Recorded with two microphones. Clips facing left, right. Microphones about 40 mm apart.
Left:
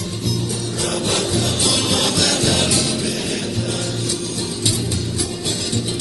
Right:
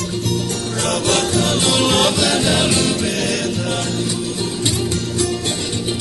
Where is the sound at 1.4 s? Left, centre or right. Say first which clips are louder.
Right 4 dB; right.